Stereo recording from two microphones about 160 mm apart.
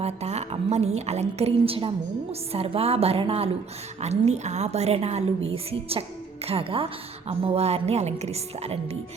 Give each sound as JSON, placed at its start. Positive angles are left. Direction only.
{"t": 0.0, "sound": "a woman's voice", "side_deg": -40}